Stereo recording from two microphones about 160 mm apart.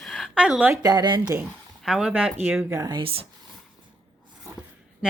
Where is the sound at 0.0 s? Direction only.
Centre (ahead or behind).